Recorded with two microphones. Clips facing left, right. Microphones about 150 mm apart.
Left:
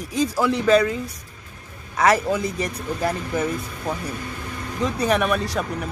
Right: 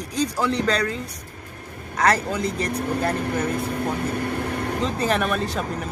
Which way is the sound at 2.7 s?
55° right (ahead or behind).